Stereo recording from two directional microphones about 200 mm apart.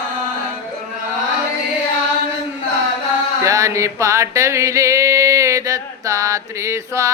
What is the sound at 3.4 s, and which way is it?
Music, 15° right (ahead or behind).